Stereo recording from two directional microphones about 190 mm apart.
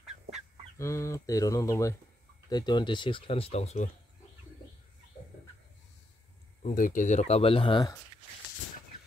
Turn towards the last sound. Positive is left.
turn(degrees=25)  # may be behind; listen again after turning